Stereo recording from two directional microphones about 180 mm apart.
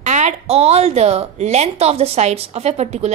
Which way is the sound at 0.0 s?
40° right (ahead or behind).